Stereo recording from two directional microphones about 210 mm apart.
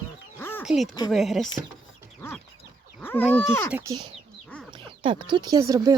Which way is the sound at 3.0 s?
10° left (ahead or behind).